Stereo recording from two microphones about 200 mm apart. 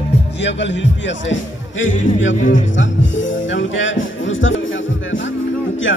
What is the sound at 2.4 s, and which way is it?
Music, 40° left (ahead or behind).